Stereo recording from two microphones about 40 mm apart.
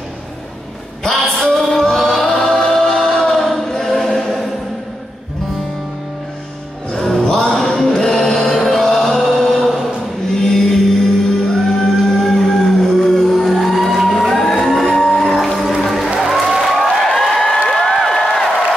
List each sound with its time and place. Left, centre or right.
1.0 s a sound: centre
1.6 s choir: centre
6.9 s music: centre
9.3 s chant: centre
10.4 s music: centre
17.6 s a sound: centre